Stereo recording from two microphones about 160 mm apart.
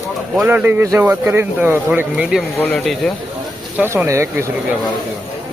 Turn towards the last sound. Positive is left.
turn(degrees=-15)  # may be behind; listen again after turning